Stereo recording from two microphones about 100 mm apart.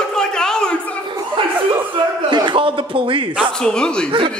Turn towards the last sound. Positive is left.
turn(degrees=10)  # may be behind; listen again after turning